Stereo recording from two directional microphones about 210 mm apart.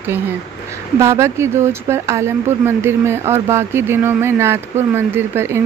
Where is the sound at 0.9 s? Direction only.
15° right (ahead or behind).